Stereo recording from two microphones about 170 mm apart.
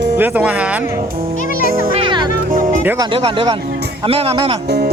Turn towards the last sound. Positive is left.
turn(degrees=-35)  # may be behind; listen again after turning